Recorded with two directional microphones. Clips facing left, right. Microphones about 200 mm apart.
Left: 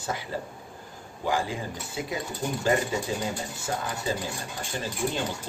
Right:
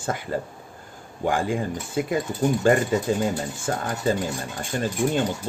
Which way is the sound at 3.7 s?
55° right (ahead or behind).